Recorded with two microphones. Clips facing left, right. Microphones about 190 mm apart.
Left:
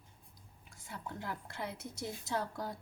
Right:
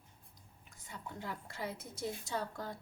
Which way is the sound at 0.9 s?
Centre (ahead or behind).